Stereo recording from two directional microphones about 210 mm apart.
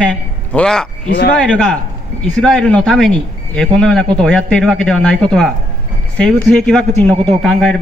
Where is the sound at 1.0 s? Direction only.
50° left (ahead or behind).